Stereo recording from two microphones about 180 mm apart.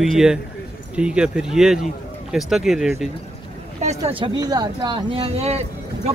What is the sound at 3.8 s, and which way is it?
Speech, 30° right (ahead or behind).